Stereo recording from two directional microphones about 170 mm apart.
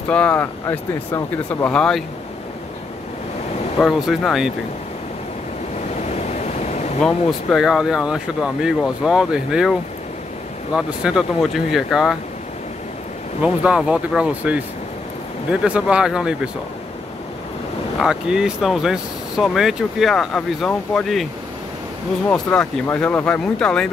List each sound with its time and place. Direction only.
0.1 s speech: 5° left (ahead or behind)
3.8 s speech: centre (ahead or behind)
5.9 s waves: 40° left (ahead or behind)
7.0 s speech: centre (ahead or behind)
13.4 s speech: 5° right (ahead or behind)
18.0 s speech: 5° right (ahead or behind)
22.3 s speech: 5° left (ahead or behind)